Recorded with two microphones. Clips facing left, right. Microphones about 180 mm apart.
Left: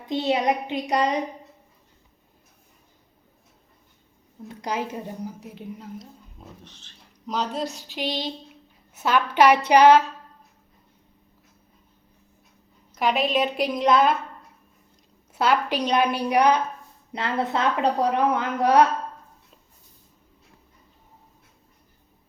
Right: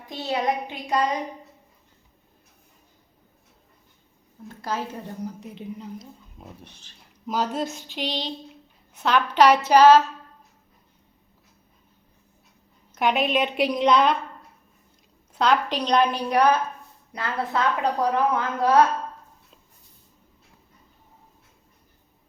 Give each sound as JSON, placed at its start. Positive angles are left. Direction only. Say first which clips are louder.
{"t": 0.1, "sound": "a woman's voice", "louder": "left 3 dB", "side_deg": 20}
{"t": 4.4, "sound": "a woman's voice", "louder": "left 1 dB", "side_deg": 15}
{"t": 7.9, "sound": "a woman's voice", "louder": "left 1 dB", "side_deg": 10}
{"t": 12.9, "sound": "a woman's voice", "louder": "even", "side_deg": 0}
{"t": 15.3, "sound": "a woman's voice", "louder": "even", "side_deg": 5}